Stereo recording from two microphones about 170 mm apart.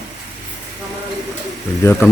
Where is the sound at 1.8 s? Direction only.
15° left (ahead or behind).